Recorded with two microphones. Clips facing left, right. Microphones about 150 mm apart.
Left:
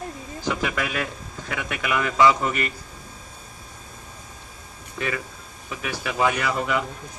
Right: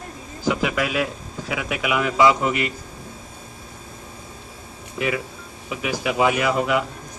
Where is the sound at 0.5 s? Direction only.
5° right (ahead or behind).